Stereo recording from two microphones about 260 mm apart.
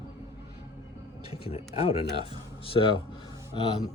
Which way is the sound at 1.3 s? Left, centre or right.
Left.